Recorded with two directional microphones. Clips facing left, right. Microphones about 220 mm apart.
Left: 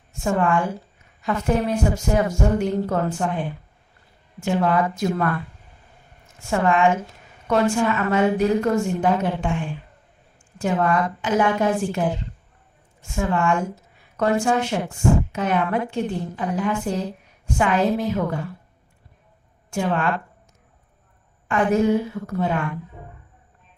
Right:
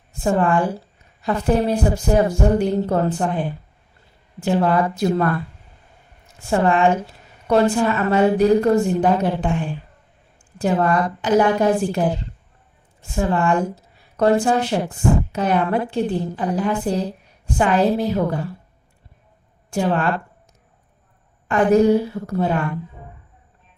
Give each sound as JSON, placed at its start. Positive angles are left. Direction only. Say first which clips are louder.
{"t": 0.1, "sound": "a woman's voice", "louder": "right 3 dB", "side_deg": -35}
{"t": 19.7, "sound": "a woman's voice", "louder": "right 3 dB", "side_deg": -35}
{"t": 21.4, "sound": "a woman's voice", "louder": "right 4 dB", "side_deg": -35}